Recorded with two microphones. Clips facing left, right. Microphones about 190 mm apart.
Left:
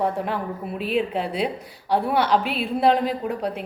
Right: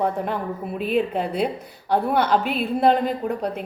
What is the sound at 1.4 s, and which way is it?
A woman's voice, 5° left (ahead or behind).